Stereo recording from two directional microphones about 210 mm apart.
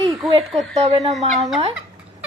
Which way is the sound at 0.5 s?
Centre (ahead or behind).